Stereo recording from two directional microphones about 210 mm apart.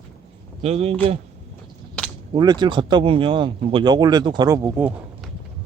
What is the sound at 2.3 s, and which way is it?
Speech, 20° right (ahead or behind).